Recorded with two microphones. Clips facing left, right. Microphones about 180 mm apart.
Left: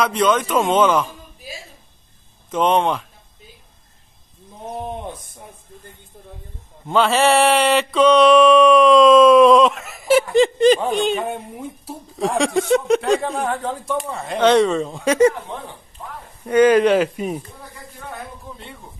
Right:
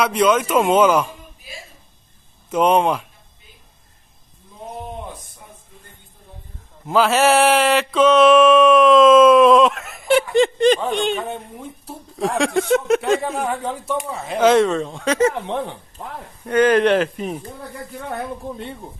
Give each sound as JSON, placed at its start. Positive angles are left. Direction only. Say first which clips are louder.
{"t": 0.0, "sound": "speech", "louder": "right 1 dB", "side_deg": -5}
{"t": 2.5, "sound": "speech", "louder": "right 1 dB", "side_deg": -10}
{"t": 6.9, "sound": "mantra", "louder": "even", "side_deg": -5}
{"t": 10.9, "sound": "speech", "louder": "left 2 dB", "side_deg": 0}
{"t": 15.4, "sound": "speech", "louder": "right 7 dB", "side_deg": -70}
{"t": 16.4, "sound": "speech", "louder": "left 2 dB", "side_deg": 10}
{"t": 18.4, "sound": "speech", "louder": "right 8 dB", "side_deg": -55}